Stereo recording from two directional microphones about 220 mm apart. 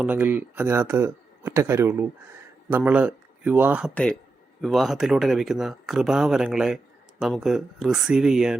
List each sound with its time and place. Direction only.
0.0 s speech: 10° right (ahead or behind)